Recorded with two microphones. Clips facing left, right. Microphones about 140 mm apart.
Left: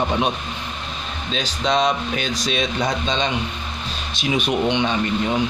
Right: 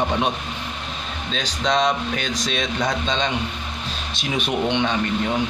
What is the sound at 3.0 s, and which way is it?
Speech, centre (ahead or behind).